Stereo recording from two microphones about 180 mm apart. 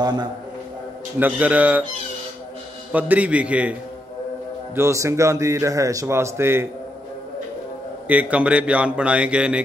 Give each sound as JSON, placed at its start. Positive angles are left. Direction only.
{"t": 0.0, "sound": "a man's voice", "side_deg": -25}
{"t": 1.2, "sound": "speech", "side_deg": -10}
{"t": 2.9, "sound": "speech", "side_deg": -10}
{"t": 4.7, "sound": "speech", "side_deg": -15}
{"t": 8.1, "sound": "speech", "side_deg": -10}